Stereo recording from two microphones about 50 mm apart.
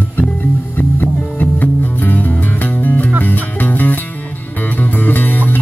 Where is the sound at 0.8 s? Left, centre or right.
Left.